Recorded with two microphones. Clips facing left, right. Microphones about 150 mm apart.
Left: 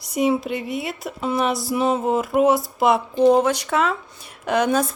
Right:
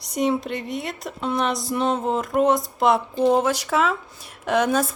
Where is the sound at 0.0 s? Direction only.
5° left (ahead or behind).